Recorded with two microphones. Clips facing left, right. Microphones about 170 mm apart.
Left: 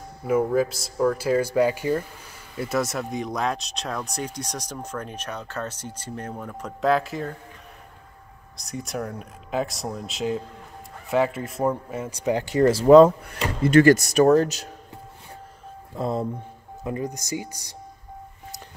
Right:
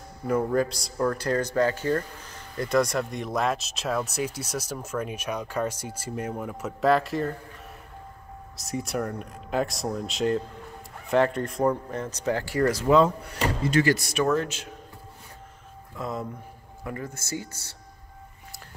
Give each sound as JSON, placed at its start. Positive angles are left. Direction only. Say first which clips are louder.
{"t": 0.3, "sound": "speech", "louder": "left 3 dB", "side_deg": 5}
{"t": 8.5, "sound": "speech", "louder": "right 1 dB", "side_deg": 0}
{"t": 12.8, "sound": "speech", "louder": "left 10 dB", "side_deg": 45}
{"t": 15.9, "sound": "speech", "louder": "left 6 dB", "side_deg": 30}
{"t": 16.8, "sound": "speech", "louder": "left 6 dB", "side_deg": 20}